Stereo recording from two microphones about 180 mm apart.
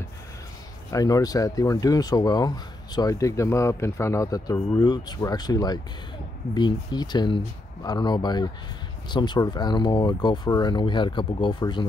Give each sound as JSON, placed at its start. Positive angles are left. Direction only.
{"t": 0.8, "sound": "speech", "side_deg": 20}